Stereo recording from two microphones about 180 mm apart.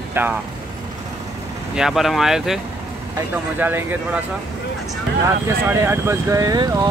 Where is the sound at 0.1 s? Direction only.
10° right (ahead or behind).